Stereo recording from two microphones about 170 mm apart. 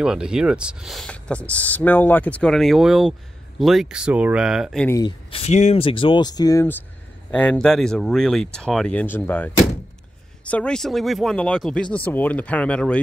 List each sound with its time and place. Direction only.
0.0 s speech: 5° right (ahead or behind)
4.8 s speech: 20° left (ahead or behind)
5.3 s speech: 40° left (ahead or behind); by 13.0 s 5° left (ahead or behind)